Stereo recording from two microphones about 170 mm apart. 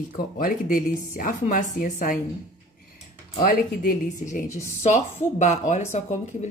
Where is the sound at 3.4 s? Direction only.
50° left (ahead or behind).